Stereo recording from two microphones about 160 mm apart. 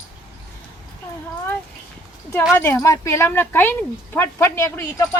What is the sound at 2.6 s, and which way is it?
Speech, 20° left (ahead or behind).